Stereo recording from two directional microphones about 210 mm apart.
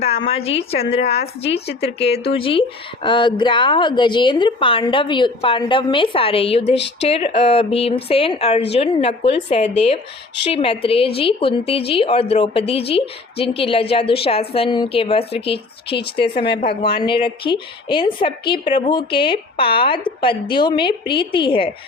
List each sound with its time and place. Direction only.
0.0 s speech: 30° left (ahead or behind)
17.0 s speech: 25° left (ahead or behind)